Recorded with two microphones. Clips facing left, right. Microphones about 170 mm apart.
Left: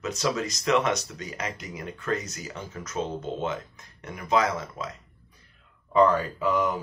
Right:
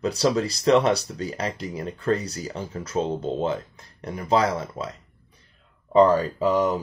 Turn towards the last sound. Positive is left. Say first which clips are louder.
# right 4 dB
turn(degrees=-35)  # may be behind; listen again after turning